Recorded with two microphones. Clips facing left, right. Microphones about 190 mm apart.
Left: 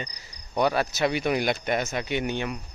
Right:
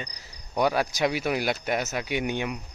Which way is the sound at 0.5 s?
10° right (ahead or behind).